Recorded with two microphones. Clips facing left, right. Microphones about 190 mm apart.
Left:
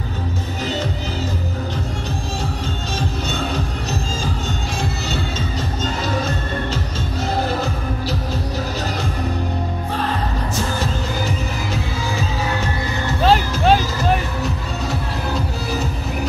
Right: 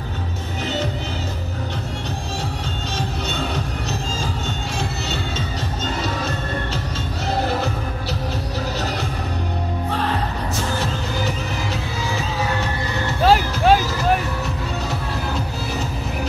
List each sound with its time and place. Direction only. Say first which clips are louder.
13.2 s music: even; 10° right (ahead or behind)